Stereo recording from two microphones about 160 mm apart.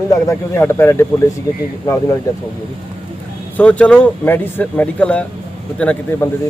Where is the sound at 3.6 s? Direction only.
10° left (ahead or behind).